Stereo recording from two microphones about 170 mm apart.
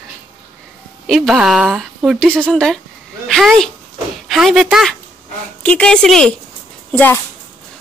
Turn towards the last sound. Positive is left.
turn(degrees=10)  # may be behind; listen again after turning